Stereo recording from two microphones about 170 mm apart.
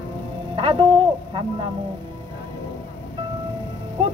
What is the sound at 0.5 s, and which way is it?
Speech, 30° right (ahead or behind).